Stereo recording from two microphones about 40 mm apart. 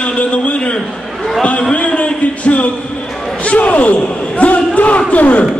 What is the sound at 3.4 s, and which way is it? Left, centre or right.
Basketball bounce, left.